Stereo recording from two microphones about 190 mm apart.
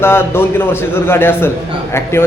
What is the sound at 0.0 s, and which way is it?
A man's voice, 10° left (ahead or behind).